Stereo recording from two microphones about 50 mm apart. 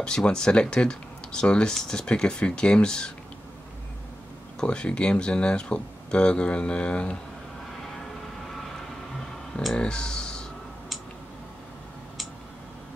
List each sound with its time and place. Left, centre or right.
0.0 s speech: centre
4.6 s speech: centre
9.8 s speech: centre